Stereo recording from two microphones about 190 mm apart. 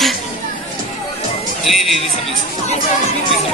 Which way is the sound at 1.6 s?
Centre (ahead or behind).